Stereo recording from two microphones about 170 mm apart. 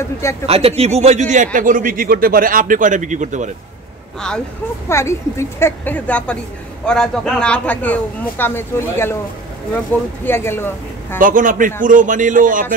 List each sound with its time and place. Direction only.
0.5 s a man's voice: 35° right (ahead or behind)
4.8 s speech: 15° left (ahead or behind)
11.1 s a man's voice: 50° right (ahead or behind)